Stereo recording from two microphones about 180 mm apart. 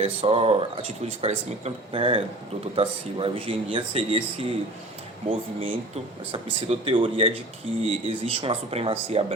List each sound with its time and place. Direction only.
0.0 s speech: 30° right (ahead or behind)